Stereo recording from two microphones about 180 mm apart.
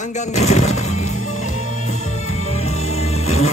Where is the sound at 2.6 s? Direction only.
35° left (ahead or behind).